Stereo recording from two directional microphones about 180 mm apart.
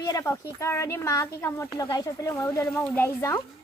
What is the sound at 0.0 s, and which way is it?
Speech, 20° left (ahead or behind).